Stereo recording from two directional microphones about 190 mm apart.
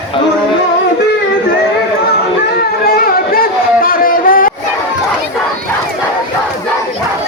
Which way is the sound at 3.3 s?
50° left (ahead or behind).